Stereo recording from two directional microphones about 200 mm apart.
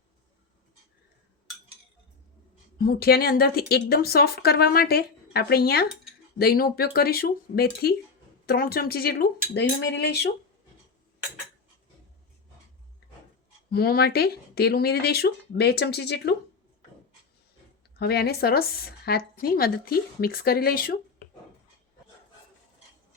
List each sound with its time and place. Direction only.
2.7 s speech: 45° left (ahead or behind)
13.7 s speech: 50° left (ahead or behind)
18.0 s speech: 55° left (ahead or behind)